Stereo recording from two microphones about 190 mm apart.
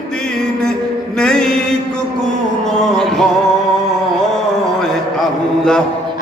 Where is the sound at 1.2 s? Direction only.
5° left (ahead or behind).